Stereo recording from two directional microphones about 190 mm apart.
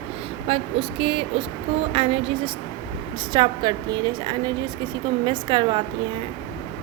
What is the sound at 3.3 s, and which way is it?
A woman's voice, 25° right (ahead or behind).